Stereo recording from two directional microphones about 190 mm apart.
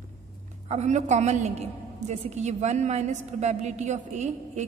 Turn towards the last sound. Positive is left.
turn(degrees=-35)  # may be behind; listen again after turning